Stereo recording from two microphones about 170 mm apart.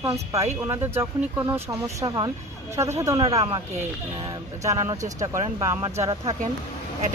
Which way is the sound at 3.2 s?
35° right (ahead or behind).